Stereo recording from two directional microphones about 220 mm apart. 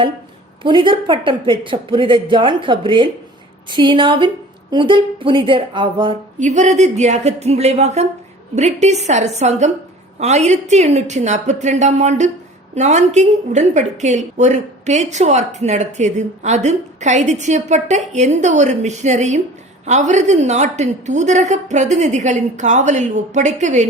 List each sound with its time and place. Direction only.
0.6 s a woman's voice: 20° right (ahead or behind)